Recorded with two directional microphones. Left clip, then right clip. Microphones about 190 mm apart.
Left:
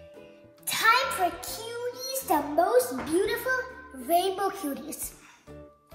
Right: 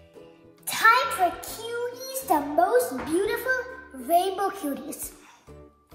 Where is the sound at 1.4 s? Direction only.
10° right (ahead or behind).